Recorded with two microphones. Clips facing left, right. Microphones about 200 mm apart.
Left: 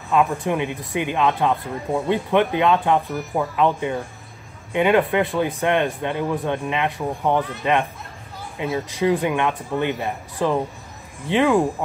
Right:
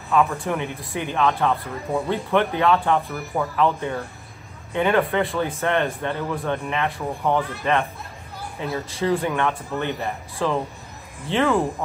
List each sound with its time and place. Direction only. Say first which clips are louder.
0.1 s speech: left 1 dB; 15° left (ahead or behind)
8.7 s speech: left 3 dB; 15° left (ahead or behind)